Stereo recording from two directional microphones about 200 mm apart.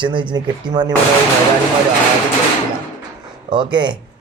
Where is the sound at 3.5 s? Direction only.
25° right (ahead or behind).